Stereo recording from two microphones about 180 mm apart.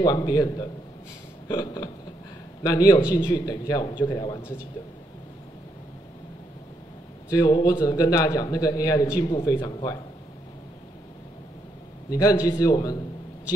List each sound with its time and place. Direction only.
0.0 s a man's voice: 20° left (ahead or behind)
7.2 s a man's voice: 20° left (ahead or behind)
9.6 s a man's voice: 30° left (ahead or behind)
12.1 s a man's voice: 20° left (ahead or behind)